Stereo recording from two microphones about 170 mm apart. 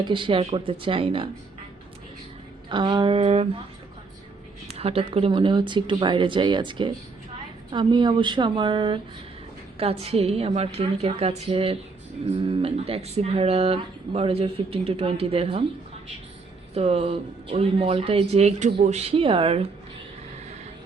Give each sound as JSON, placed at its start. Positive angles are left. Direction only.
{"t": 0.0, "sound": "speech", "side_deg": -30}
{"t": 2.6, "sound": "speech", "side_deg": -30}
{"t": 4.7, "sound": "speech", "side_deg": -35}
{"t": 16.7, "sound": "speech", "side_deg": -35}